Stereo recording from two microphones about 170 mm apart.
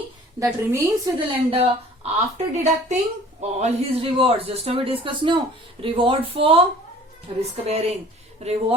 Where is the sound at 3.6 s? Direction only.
35° right (ahead or behind).